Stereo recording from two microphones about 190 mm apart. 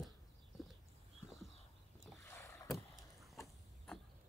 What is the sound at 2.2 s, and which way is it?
Boat, 15° left (ahead or behind).